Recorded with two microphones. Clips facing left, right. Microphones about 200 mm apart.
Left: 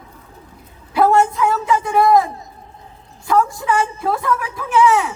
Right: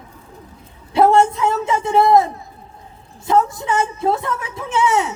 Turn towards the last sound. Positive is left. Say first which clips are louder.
# left 3 dB
turn(degrees=-25)  # may be behind; listen again after turning